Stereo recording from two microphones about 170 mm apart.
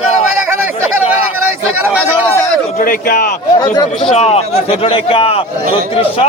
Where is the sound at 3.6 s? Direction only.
25° left (ahead or behind).